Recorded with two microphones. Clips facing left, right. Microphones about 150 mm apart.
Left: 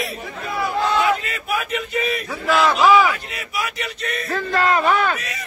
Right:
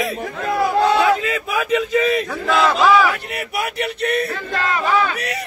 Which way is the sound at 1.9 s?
90° right.